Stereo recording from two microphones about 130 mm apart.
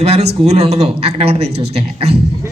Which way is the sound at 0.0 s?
55° right (ahead or behind).